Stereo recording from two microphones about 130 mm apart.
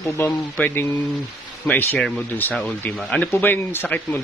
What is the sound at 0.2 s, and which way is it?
Speech, 15° left (ahead or behind).